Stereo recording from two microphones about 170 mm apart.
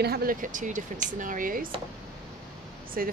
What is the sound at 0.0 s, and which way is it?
Speech, 65° right (ahead or behind).